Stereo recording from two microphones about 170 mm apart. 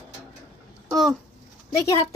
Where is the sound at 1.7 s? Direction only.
15° left (ahead or behind).